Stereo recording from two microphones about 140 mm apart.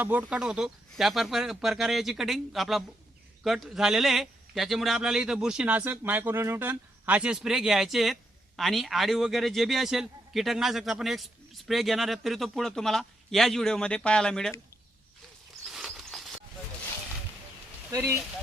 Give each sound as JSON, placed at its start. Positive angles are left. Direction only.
{"t": 0.0, "sound": "a man's voice", "side_deg": -10}
{"t": 15.6, "sound": "patter", "side_deg": 0}
{"t": 17.9, "sound": "speech", "side_deg": -20}